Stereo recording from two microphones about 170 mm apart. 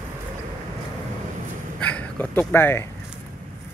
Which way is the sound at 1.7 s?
5° left (ahead or behind).